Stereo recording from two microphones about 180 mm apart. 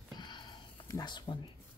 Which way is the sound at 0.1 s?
25° left (ahead or behind).